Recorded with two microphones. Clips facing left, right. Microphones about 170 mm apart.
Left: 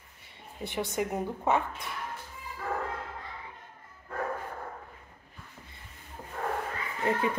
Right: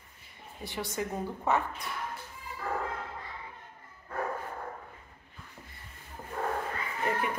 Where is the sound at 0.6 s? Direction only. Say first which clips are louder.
Left 4 dB; 20° left (ahead or behind).